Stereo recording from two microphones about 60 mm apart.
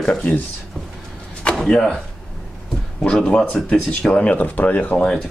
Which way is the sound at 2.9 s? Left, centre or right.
Centre.